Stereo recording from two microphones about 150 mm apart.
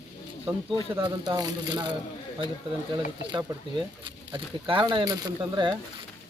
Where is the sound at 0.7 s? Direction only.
30° right (ahead or behind).